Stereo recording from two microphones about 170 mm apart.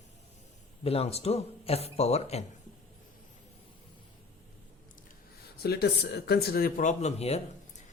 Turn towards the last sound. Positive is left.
turn(degrees=40)  # may be behind; listen again after turning